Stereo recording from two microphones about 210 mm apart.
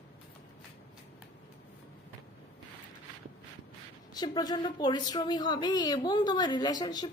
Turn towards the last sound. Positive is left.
turn(degrees=20)  # may be behind; listen again after turning